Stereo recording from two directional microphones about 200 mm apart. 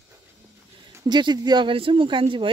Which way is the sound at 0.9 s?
20° right (ahead or behind).